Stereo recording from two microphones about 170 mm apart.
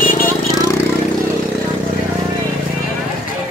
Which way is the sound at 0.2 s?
20° left (ahead or behind).